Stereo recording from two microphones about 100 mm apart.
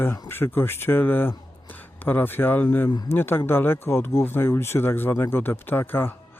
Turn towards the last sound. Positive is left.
turn(degrees=20)  # may be behind; listen again after turning